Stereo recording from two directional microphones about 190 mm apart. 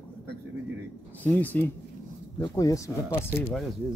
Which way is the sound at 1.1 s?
10° left (ahead or behind).